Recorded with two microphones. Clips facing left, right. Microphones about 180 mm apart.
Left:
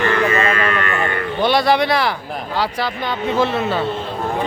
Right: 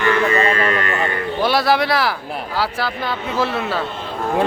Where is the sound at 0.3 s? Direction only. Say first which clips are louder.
Right 1 dB; 35° right (ahead or behind).